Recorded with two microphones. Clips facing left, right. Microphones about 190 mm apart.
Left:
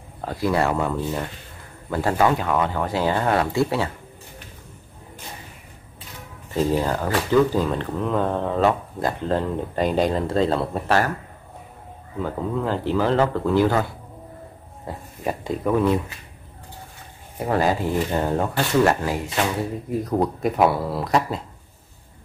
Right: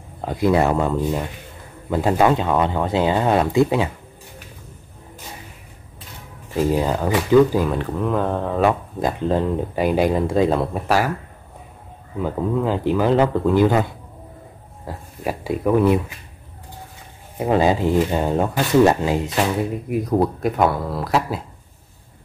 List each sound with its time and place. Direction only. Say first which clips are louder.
0.2 s speech: right 4 dB; 20° right (ahead or behind)
6.5 s speech: right 2 dB; 15° right (ahead or behind)
12.2 s speech: right 4 dB; 15° right (ahead or behind)
14.9 s speech: right 1 dB; 5° right (ahead or behind)
17.4 s speech: right 4 dB; 20° right (ahead or behind)
20.4 s speech: even; 5° left (ahead or behind)